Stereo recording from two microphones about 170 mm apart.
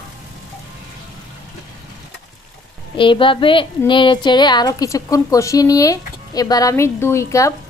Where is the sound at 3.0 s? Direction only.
30° left (ahead or behind).